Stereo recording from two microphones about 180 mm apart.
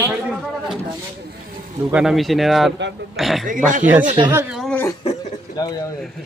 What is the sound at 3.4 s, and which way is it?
Speech, 45° right (ahead or behind).